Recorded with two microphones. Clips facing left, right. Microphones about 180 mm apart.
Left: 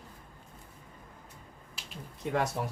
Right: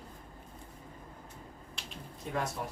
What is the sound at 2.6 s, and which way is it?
Speech, 65° left (ahead or behind).